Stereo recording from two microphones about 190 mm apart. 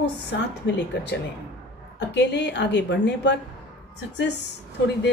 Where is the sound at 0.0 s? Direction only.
65° left (ahead or behind).